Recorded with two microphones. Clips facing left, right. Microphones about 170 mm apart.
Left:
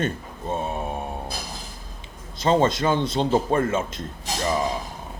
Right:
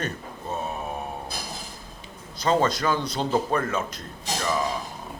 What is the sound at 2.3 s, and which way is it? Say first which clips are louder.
A man's voice: left 3 dB; 25° left (ahead or behind).